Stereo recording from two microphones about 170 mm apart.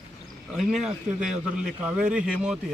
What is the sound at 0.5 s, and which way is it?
Speech, centre (ahead or behind).